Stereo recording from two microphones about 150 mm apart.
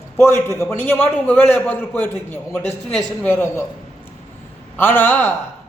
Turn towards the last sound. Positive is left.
turn(degrees=15)  # may be behind; listen again after turning